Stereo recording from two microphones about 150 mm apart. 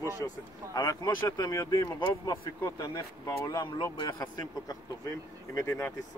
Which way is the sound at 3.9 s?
30° left (ahead or behind).